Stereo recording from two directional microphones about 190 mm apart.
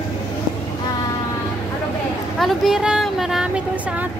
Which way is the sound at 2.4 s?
Centre (ahead or behind).